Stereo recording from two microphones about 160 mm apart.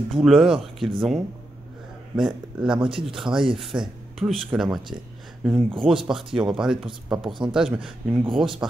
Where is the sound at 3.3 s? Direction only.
30° right (ahead or behind).